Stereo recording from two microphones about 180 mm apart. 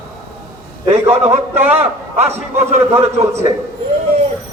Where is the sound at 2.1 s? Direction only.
35° right (ahead or behind).